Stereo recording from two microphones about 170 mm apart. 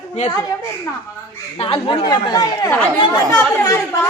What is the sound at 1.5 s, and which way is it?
A woman's voice, 35° left (ahead or behind).